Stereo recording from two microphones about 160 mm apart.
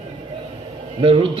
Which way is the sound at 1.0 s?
35° right (ahead or behind).